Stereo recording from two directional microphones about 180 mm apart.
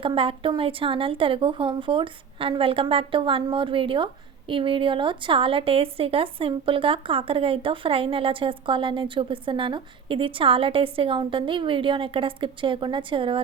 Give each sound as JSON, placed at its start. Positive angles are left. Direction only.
{"t": 0.0, "sound": "a woman's voice", "side_deg": -30}